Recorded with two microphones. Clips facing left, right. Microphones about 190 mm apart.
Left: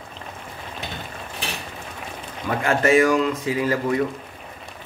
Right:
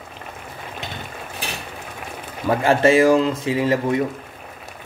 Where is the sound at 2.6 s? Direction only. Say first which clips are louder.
Right 3 dB; 30° right (ahead or behind).